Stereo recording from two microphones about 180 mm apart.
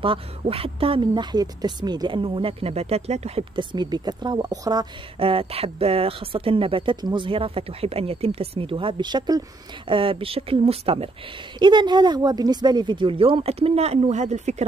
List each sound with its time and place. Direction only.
0.0 s speech: 30° right (ahead or behind)